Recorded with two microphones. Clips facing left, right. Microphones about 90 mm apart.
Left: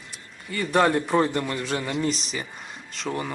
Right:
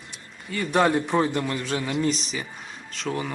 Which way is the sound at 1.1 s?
15° right (ahead or behind).